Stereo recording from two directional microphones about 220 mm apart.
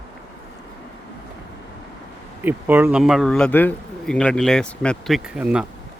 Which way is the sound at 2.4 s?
10° right (ahead or behind).